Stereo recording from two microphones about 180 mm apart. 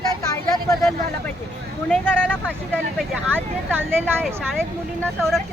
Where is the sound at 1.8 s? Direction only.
5° left (ahead or behind).